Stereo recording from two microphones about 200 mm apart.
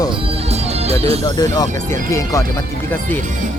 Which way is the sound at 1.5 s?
20° left (ahead or behind).